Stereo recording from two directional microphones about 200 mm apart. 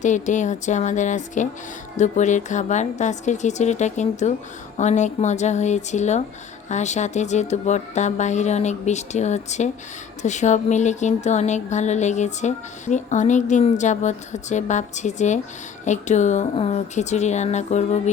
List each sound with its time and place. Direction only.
0.0 s speech: 40° left (ahead or behind)